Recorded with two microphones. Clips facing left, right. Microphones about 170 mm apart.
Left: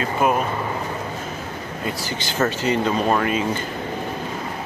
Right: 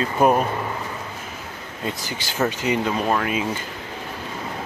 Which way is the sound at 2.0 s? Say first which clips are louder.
Left 2 dB; 10° right (ahead or behind).